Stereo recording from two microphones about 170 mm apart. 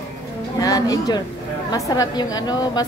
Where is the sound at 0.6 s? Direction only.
20° left (ahead or behind).